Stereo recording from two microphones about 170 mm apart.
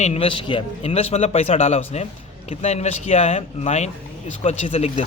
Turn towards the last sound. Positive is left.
turn(degrees=35)  # may be behind; listen again after turning